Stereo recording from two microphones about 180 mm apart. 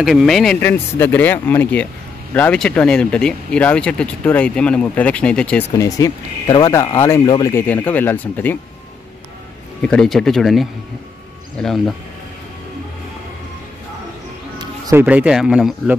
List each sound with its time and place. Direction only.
0.0 s speech: centre (ahead or behind)
5.7 s speech: 20° left (ahead or behind)
9.8 s speech: 5° left (ahead or behind)
14.6 s music: 20° right (ahead or behind)
15.0 s speech: 5° right (ahead or behind)